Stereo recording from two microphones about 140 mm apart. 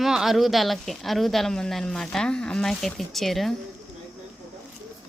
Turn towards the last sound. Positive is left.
turn(degrees=0)  # may be behind; listen again after turning